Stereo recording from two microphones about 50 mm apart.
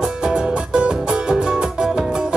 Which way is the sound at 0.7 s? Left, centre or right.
Centre.